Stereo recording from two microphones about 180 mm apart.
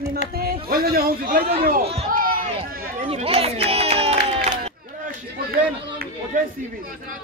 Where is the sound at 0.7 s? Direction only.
55° right (ahead or behind).